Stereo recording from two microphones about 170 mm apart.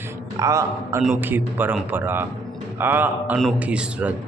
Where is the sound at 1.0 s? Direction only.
5° right (ahead or behind).